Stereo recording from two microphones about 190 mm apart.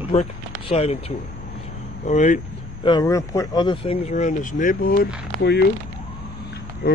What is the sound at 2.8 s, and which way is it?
Speech, 20° left (ahead or behind).